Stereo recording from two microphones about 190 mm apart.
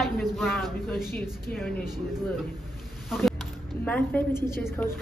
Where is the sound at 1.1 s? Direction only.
55° left (ahead or behind).